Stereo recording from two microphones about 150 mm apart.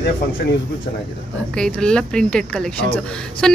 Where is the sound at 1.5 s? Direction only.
5° left (ahead or behind).